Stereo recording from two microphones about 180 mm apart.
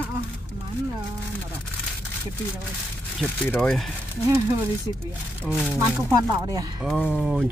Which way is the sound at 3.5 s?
Centre (ahead or behind).